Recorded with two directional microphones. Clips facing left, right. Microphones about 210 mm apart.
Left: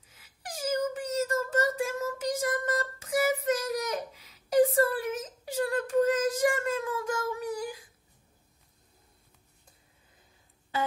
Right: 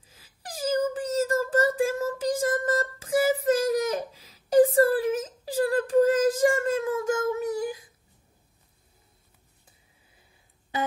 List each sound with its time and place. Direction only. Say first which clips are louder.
0.0 s wail: right 1 dB; 30° right (ahead or behind)